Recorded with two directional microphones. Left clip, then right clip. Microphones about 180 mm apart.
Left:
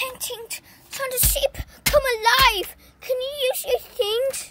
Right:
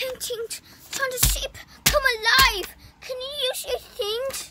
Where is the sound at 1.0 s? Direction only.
20° left (ahead or behind).